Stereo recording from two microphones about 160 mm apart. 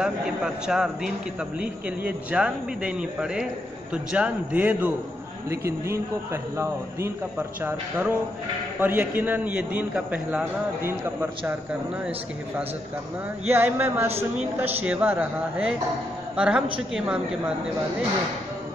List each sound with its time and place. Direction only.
0.0 s a man's voice: 5° right (ahead or behind)
13.5 s a man's voice: 15° right (ahead or behind)